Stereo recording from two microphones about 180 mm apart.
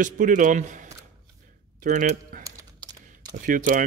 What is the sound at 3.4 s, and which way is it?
Speech, 50° right (ahead or behind).